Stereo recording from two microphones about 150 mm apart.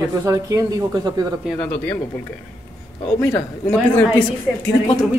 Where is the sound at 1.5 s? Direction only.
10° left (ahead or behind).